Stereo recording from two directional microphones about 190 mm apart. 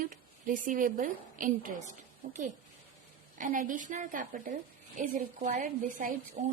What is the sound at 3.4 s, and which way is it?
Speech, 45° right (ahead or behind).